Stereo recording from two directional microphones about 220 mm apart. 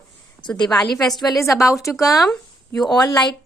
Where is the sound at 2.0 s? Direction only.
15° left (ahead or behind).